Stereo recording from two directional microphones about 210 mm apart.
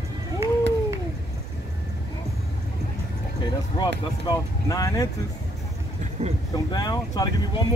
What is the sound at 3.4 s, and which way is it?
Speech, 20° left (ahead or behind).